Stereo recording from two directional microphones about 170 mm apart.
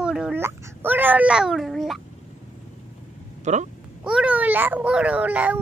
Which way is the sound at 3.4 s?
45° right (ahead or behind).